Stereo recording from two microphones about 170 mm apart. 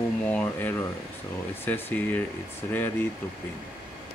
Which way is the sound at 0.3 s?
10° left (ahead or behind).